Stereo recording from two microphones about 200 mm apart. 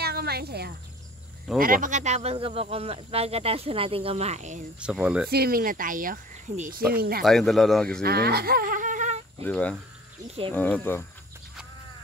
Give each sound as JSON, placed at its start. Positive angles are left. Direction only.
{"t": 0.0, "sound": "cricket", "side_deg": -55}
{"t": 1.6, "sound": "speech", "side_deg": -40}
{"t": 4.7, "sound": "speech", "side_deg": -5}
{"t": 5.3, "sound": "speech", "side_deg": -50}
{"t": 7.0, "sound": "speech", "side_deg": -50}
{"t": 7.2, "sound": "speech", "side_deg": 0}
{"t": 8.0, "sound": "speech", "side_deg": -50}
{"t": 9.4, "sound": "speech", "side_deg": 5}